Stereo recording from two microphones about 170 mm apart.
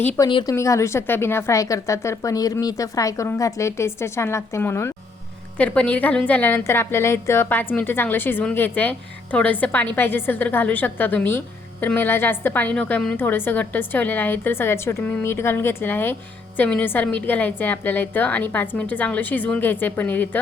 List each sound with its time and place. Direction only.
0.2 s a woman's voice: 25° left (ahead or behind)